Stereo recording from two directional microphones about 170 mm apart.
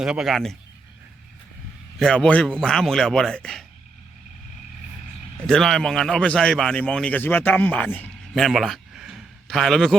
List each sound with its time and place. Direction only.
0.0 s speech: 5° right (ahead or behind)
2.0 s speech: 5° left (ahead or behind)
5.4 s a man's voice: 5° left (ahead or behind)
8.3 s a sound: centre (ahead or behind)